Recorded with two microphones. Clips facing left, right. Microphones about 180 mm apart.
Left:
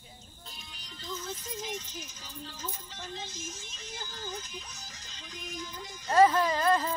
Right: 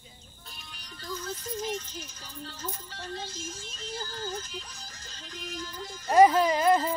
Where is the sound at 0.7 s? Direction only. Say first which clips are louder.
Right 2 dB; 20° left (ahead or behind).